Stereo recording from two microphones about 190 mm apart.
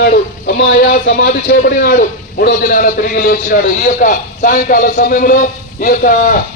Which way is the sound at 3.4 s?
40° left (ahead or behind).